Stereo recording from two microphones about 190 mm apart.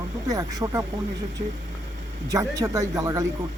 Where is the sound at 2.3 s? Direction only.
15° right (ahead or behind).